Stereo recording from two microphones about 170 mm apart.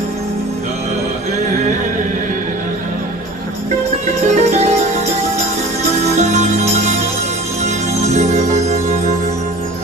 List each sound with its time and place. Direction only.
4.3 s music: 40° right (ahead or behind)
6.1 s music: 40° right (ahead or behind)
8.0 s music: 45° right (ahead or behind)